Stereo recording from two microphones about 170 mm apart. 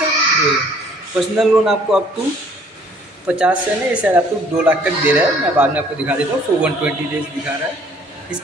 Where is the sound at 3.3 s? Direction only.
5° right (ahead or behind).